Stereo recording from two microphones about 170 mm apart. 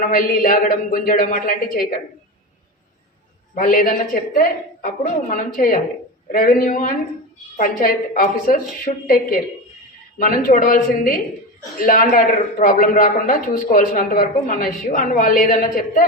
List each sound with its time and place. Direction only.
0.1 s a man's voice: 55° left (ahead or behind)
3.5 s a woman's voice: 50° left (ahead or behind)